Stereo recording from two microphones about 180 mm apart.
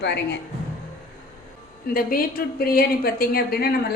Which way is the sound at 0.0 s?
70° left (ahead or behind).